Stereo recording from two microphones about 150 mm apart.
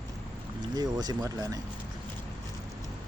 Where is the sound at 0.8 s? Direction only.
25° right (ahead or behind).